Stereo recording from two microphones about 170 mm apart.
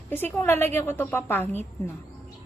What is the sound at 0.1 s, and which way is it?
A woman's voice, 10° left (ahead or behind).